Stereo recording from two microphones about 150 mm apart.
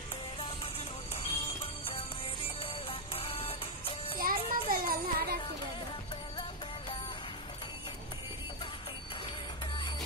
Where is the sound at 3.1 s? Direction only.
40° left (ahead or behind).